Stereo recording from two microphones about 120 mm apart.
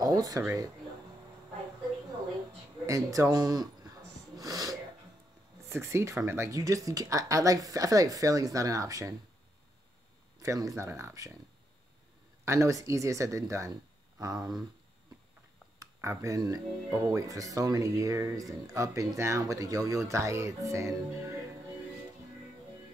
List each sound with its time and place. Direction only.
0.0 s a sound: 30° right (ahead or behind)
2.9 s speech: 25° right (ahead or behind)
4.4 s sneeze: 30° right (ahead or behind)
5.7 s speech: 20° right (ahead or behind)
10.4 s speech: 25° right (ahead or behind)
12.4 s speech: 25° right (ahead or behind)
15.8 s speech: 25° right (ahead or behind)